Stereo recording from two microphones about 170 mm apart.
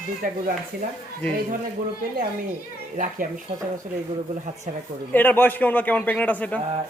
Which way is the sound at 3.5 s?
30° right (ahead or behind).